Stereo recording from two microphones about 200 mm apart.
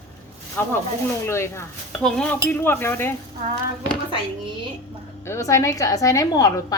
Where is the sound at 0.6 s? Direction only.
10° left (ahead or behind).